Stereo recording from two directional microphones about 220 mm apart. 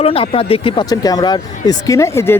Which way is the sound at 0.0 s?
25° left (ahead or behind).